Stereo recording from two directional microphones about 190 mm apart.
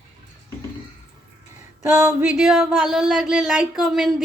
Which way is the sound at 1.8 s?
15° right (ahead or behind).